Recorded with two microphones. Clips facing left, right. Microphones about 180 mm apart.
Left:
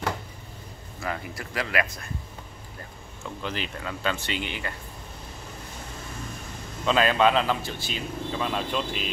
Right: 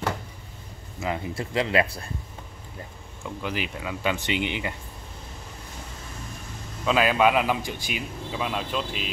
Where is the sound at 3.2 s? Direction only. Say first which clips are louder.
Right 2 dB; 10° right (ahead or behind).